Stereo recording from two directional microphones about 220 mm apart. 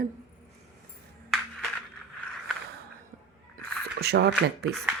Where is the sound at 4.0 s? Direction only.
50° right (ahead or behind).